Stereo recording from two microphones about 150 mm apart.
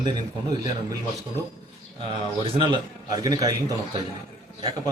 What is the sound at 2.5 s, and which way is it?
A man's voice, 30° right (ahead or behind).